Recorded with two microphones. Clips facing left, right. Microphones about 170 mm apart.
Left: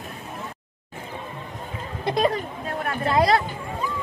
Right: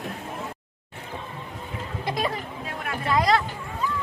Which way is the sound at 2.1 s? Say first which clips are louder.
Left 7 dB; 40° left (ahead or behind).